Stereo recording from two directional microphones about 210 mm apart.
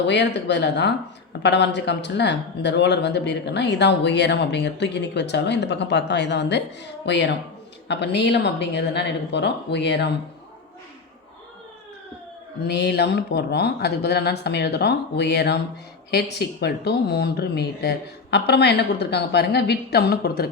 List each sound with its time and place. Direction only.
0.0 s speech: 55° left (ahead or behind)
12.6 s speech: 50° left (ahead or behind)